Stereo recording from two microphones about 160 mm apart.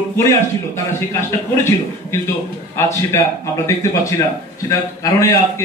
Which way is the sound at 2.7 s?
15° left (ahead or behind).